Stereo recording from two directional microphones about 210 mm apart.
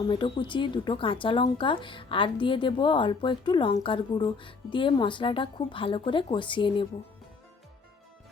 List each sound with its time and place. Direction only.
0.0 s a woman's voice: 20° left (ahead or behind)